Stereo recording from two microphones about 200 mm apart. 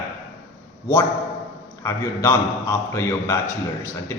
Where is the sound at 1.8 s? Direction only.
15° left (ahead or behind).